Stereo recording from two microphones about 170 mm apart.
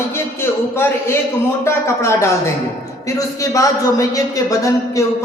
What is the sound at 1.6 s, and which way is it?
Speech, 15° left (ahead or behind).